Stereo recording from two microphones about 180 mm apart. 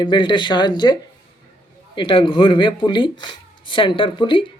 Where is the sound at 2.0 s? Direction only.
25° left (ahead or behind).